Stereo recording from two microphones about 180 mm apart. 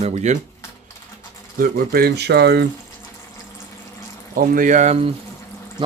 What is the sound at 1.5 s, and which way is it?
Speech, 55° right (ahead or behind).